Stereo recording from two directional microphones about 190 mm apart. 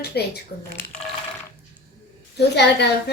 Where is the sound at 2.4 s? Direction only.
60° left (ahead or behind).